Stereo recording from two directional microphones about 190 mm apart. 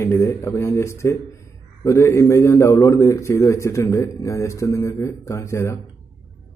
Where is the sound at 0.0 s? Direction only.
15° left (ahead or behind).